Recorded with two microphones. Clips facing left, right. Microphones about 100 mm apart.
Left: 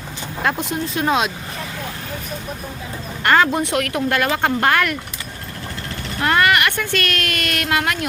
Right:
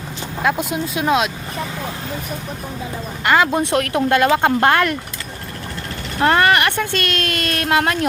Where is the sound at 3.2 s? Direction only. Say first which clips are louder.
Even; 10° right (ahead or behind).